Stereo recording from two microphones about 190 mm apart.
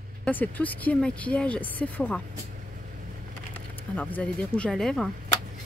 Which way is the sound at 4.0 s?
5° left (ahead or behind).